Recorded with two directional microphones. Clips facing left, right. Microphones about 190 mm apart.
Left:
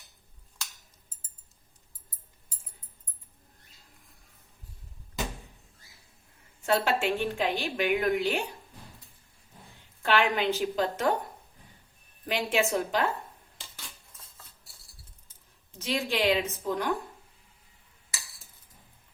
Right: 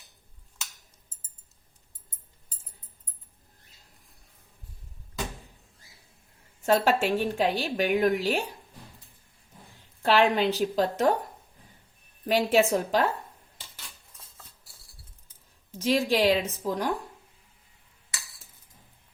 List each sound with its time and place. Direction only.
6.6 s a woman's voice: 40° right (ahead or behind)
10.0 s a woman's voice: 35° right (ahead or behind)
12.3 s a woman's voice: 40° right (ahead or behind)
15.8 s a woman's voice: 40° right (ahead or behind)